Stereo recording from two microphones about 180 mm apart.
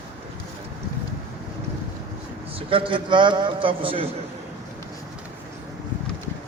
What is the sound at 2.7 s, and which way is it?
A man's voice, 30° right (ahead or behind).